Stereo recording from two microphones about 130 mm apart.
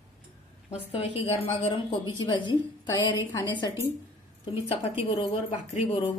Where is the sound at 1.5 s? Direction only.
35° left (ahead or behind).